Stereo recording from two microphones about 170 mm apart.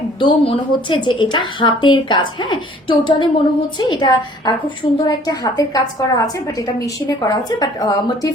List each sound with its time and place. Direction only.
0.2 s a woman's voice: 30° left (ahead or behind)